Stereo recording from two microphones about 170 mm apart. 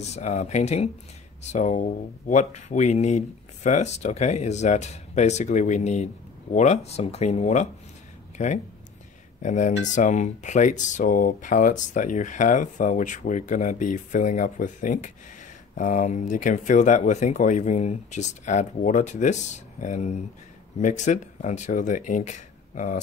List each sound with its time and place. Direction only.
0.0 s speech: 40° left (ahead or behind)